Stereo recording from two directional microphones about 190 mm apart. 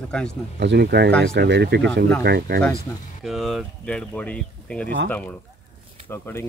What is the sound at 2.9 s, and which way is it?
Speech, 15° left (ahead or behind).